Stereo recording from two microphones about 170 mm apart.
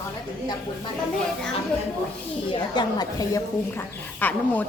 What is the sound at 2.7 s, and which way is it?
Speech, 25° left (ahead or behind).